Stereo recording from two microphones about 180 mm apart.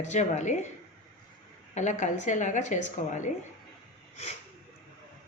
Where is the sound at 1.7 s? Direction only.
40° left (ahead or behind).